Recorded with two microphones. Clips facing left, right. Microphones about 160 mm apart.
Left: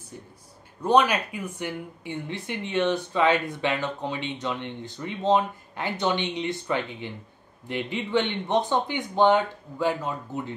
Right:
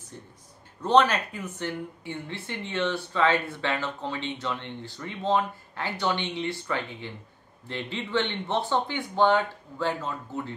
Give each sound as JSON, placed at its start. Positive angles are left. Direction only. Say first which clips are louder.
{"t": 0.1, "sound": "speech", "louder": "left 2 dB", "side_deg": 10}